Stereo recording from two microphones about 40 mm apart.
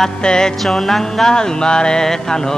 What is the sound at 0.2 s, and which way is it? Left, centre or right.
Music, left.